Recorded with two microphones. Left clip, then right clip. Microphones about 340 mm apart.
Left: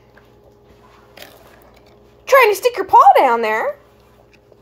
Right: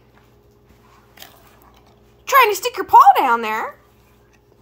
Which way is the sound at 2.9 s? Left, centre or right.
Centre.